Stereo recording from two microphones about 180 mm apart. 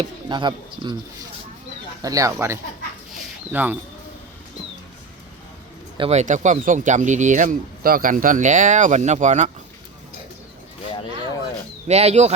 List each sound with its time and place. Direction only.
0.0 s speech: 25° right (ahead or behind)
2.0 s speech: 20° right (ahead or behind)
6.0 s speech: 40° right (ahead or behind)
11.9 s speech: 35° right (ahead or behind)